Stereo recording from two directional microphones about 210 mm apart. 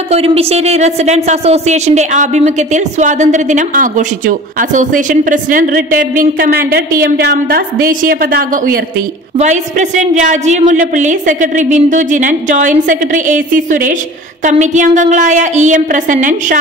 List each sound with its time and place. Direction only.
0.1 s speech: 30° right (ahead or behind)